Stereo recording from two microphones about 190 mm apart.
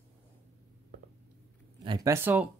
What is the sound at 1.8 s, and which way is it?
Speech, 20° right (ahead or behind).